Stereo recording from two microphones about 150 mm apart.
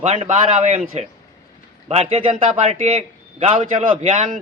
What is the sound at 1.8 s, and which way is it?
Speech, 40° right (ahead or behind).